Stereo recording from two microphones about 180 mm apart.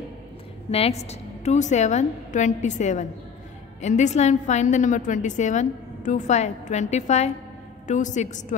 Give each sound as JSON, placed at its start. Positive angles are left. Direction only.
{"t": 0.7, "sound": "a woman's voice", "side_deg": 35}